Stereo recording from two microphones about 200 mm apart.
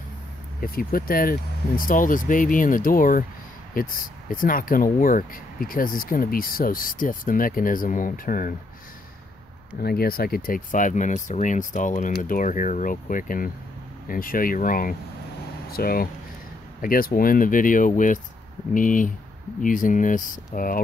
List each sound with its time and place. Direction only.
0.6 s speech: 45° left (ahead or behind)
9.8 s speech: 50° left (ahead or behind)